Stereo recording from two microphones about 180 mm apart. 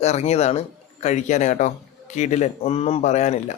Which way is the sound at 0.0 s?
35° left (ahead or behind).